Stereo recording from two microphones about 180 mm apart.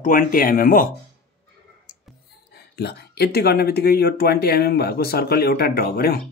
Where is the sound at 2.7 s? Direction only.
60° left (ahead or behind).